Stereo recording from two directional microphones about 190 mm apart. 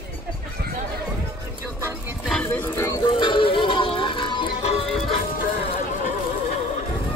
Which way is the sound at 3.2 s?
25° left (ahead or behind).